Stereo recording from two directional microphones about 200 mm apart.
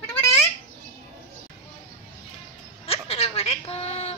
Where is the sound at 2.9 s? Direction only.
30° left (ahead or behind).